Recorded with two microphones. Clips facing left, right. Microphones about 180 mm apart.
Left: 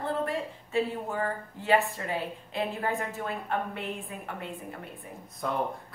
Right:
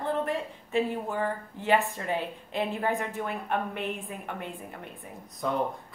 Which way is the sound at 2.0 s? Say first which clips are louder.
Right 2 dB; 20° right (ahead or behind).